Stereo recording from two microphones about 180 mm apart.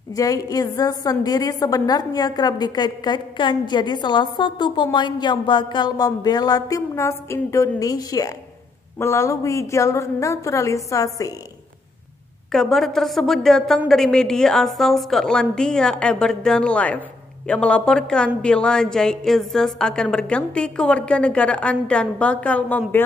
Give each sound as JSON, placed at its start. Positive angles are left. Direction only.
{"t": 0.1, "sound": "a woman's voice", "side_deg": 20}
{"t": 12.5, "sound": "a woman's voice", "side_deg": 0}